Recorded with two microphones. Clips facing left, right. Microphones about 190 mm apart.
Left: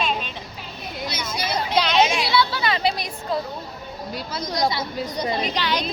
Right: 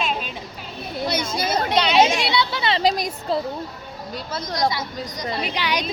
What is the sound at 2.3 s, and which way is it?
Speech, 20° right (ahead or behind).